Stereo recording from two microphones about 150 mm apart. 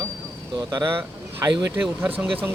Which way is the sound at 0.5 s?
25° right (ahead or behind).